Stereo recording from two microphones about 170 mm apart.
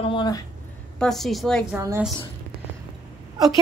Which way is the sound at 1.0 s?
Centre (ahead or behind).